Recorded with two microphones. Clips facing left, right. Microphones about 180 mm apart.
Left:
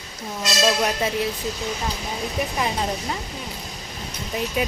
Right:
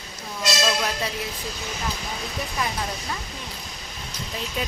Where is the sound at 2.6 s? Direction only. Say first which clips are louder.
Left 2 dB; 25° left (ahead or behind).